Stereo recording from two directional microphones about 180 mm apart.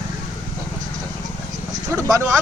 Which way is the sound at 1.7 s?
20° right (ahead or behind).